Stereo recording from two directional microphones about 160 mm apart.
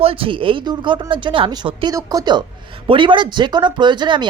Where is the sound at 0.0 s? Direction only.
35° right (ahead or behind).